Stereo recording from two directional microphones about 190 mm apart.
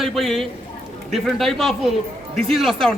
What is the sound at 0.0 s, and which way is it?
A man's voice, centre (ahead or behind).